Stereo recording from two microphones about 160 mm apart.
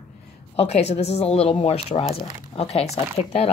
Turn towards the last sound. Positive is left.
turn(degrees=40)  # may be behind; listen again after turning